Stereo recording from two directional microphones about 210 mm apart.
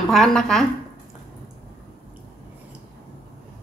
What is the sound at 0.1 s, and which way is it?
Speech, centre (ahead or behind).